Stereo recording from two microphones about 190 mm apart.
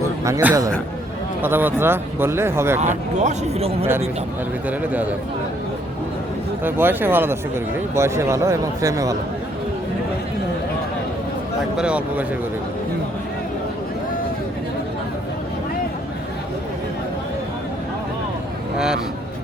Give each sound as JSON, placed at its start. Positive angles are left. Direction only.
{"t": 0.3, "sound": "speech", "side_deg": -15}
{"t": 2.8, "sound": "a man's voice", "side_deg": -40}
{"t": 6.7, "sound": "speech", "side_deg": -10}
{"t": 11.8, "sound": "speech", "side_deg": -5}